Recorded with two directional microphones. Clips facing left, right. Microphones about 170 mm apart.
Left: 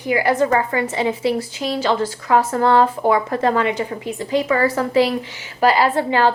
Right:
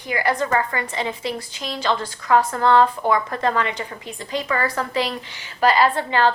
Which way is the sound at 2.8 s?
30° left (ahead or behind).